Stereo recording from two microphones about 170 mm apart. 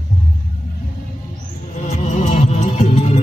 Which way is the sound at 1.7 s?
45° left (ahead or behind).